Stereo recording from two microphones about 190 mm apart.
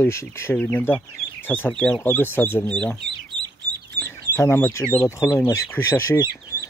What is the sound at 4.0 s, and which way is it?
Chicken, 10° left (ahead or behind).